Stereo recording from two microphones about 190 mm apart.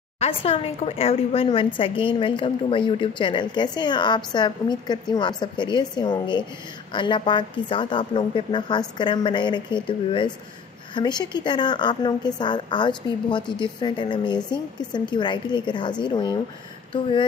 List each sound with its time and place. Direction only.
0.2 s a woman's voice: 30° left (ahead or behind)